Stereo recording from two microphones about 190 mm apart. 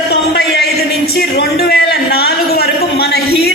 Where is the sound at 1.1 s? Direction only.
55° left (ahead or behind).